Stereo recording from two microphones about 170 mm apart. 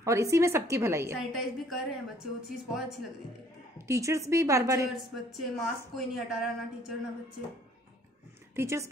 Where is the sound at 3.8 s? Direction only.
15° right (ahead or behind).